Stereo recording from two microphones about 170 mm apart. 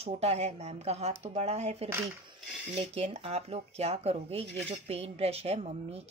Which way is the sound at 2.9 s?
35° right (ahead or behind).